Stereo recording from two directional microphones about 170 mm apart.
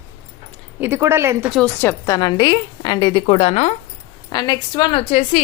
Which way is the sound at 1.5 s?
5° left (ahead or behind).